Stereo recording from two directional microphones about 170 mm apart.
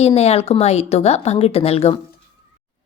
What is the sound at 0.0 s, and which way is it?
Speech, 40° left (ahead or behind).